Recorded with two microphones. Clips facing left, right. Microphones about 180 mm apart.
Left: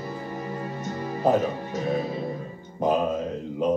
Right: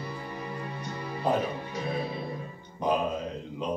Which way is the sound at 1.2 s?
45° left (ahead or behind).